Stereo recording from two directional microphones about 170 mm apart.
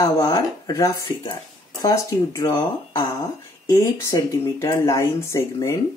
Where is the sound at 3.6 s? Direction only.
20° left (ahead or behind).